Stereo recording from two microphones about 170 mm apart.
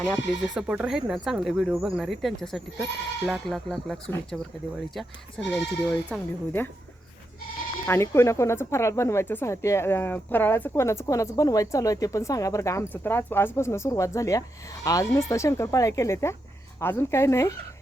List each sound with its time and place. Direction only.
0.0 s speech: centre (ahead or behind)
5.5 s speech: 10° left (ahead or behind)
7.9 s speech: 15° left (ahead or behind)